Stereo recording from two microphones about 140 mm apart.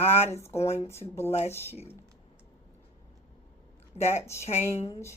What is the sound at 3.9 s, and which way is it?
Speech, 45° left (ahead or behind).